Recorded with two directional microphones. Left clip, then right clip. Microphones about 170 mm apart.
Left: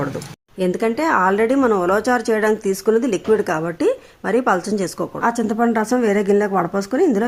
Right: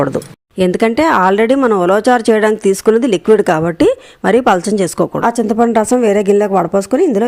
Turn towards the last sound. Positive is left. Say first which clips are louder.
# right 6 dB
turn(degrees=-35)  # may be behind; listen again after turning